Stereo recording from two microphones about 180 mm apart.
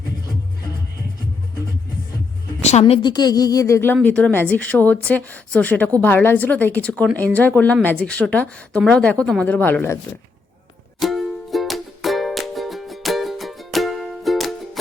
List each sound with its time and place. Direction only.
2.6 s a woman's voice: 35° left (ahead or behind); by 10.0 s 10° left (ahead or behind)
11.0 s music: centre (ahead or behind)